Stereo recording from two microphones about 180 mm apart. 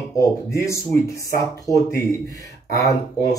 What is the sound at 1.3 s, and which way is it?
Speech, 20° left (ahead or behind).